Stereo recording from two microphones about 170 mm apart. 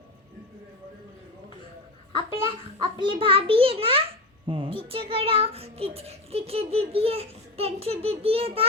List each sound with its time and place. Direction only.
2.1 s a child's voice: 30° right (ahead or behind)